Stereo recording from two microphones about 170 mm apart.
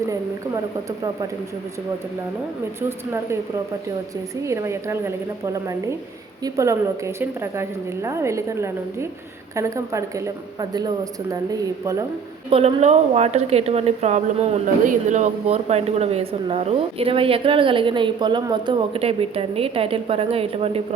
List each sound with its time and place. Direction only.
4.4 s a woman's voice: 15° right (ahead or behind)
6.4 s a woman's voice: 20° right (ahead or behind)
12.5 s a woman's voice: 35° right (ahead or behind)